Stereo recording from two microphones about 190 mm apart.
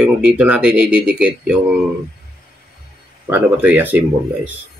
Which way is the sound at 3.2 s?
10° right (ahead or behind).